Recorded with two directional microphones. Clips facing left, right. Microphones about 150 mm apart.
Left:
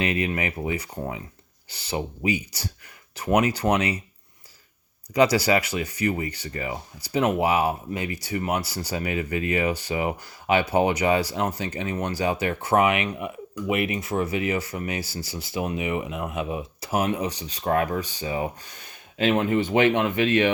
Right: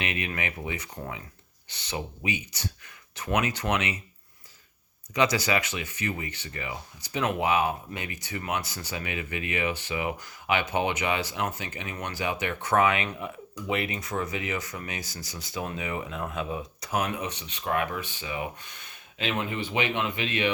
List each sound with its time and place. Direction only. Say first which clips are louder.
0.0 s speech: left 7 dB; 35° left (ahead or behind)
5.1 s speech: left 5 dB; 35° left (ahead or behind)
12.7 s speech: left 3 dB; 25° left (ahead or behind)
14.0 s speech: left 6 dB; 25° left (ahead or behind)
15.6 s speech: left 6 dB; 20° left (ahead or behind)
16.8 s speech: left 5 dB; 30° left (ahead or behind)
19.5 s speech: left 9 dB; 50° left (ahead or behind)